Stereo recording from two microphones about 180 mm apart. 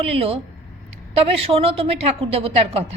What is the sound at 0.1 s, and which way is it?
A woman's voice, 30° right (ahead or behind).